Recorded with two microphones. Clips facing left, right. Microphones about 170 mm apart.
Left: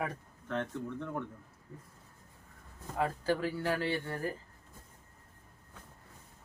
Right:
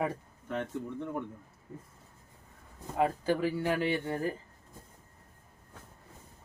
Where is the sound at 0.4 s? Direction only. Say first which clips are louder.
Right 1 dB; 10° right (ahead or behind).